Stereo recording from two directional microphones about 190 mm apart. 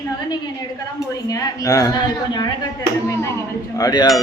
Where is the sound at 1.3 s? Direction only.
20° left (ahead or behind).